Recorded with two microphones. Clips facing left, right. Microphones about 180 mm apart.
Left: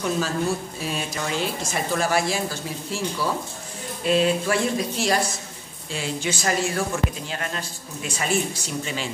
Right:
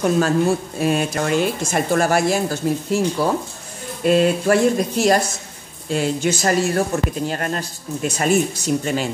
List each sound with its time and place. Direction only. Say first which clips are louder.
0.0 s speech: right 7 dB; 55° right (ahead or behind)